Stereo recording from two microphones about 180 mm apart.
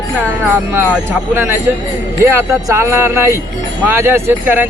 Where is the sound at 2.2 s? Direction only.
15° right (ahead or behind).